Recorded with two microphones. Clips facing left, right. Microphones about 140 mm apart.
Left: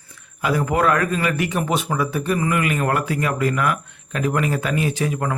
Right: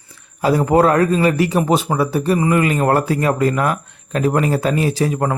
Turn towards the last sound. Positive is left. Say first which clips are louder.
# right 5 dB
turn(degrees=-35)  # may be behind; listen again after turning